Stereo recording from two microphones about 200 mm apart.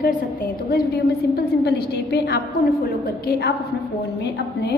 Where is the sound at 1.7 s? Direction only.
55° left (ahead or behind).